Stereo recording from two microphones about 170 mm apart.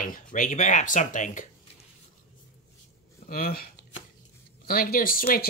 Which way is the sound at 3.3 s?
60° left (ahead or behind).